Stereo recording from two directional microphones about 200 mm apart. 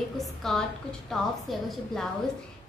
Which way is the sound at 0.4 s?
Centre (ahead or behind).